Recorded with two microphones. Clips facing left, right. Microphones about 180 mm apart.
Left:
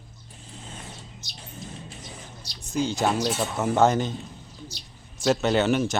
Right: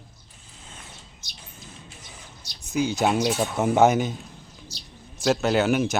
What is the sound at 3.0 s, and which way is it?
Speech, 15° right (ahead or behind).